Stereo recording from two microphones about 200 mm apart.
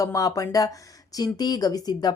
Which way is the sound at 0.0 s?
15° left (ahead or behind).